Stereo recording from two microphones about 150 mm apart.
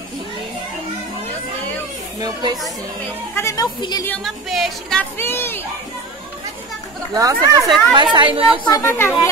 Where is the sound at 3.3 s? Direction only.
20° left (ahead or behind).